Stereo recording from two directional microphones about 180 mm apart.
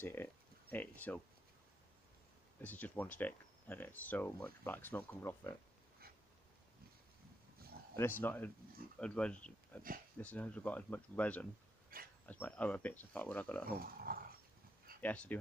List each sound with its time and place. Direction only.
0.0 s speech: 10° left (ahead or behind)
2.6 s speech: 10° left (ahead or behind)
7.9 s speech: 15° left (ahead or behind)
11.9 s speech: 55° right (ahead or behind)
12.3 s speech: 10° left (ahead or behind)
13.7 s speech: 55° right (ahead or behind)
15.0 s speech: 10° left (ahead or behind)